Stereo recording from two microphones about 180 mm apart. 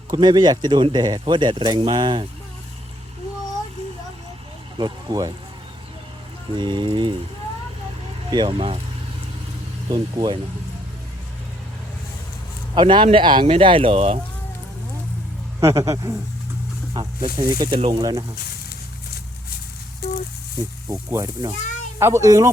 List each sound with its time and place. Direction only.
0.1 s speech: 25° right (ahead or behind)
4.8 s speech: 20° right (ahead or behind)
6.5 s speech: 25° right (ahead or behind)
8.3 s speech: 25° right (ahead or behind)
9.9 s speech: 25° right (ahead or behind)
12.7 s speech: 25° right (ahead or behind)
15.6 s speech: 15° right (ahead or behind)
17.3 s speech: 25° right (ahead or behind)
20.8 s speech: 15° right (ahead or behind)